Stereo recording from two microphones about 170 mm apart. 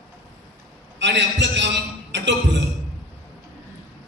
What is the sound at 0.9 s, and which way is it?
A man's voice, 90° right.